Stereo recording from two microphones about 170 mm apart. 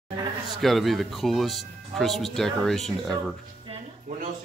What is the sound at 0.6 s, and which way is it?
Speech, centre (ahead or behind).